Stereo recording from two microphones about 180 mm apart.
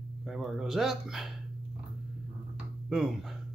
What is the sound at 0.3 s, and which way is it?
Speech, centre (ahead or behind).